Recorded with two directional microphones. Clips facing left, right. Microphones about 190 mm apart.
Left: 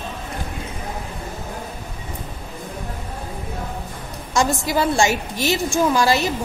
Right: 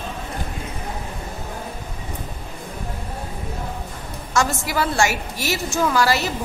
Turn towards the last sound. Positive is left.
turn(degrees=20)  # may be behind; listen again after turning